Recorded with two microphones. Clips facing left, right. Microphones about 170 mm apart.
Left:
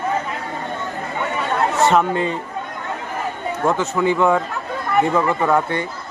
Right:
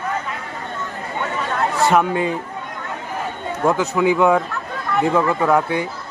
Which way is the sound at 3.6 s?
5° right (ahead or behind).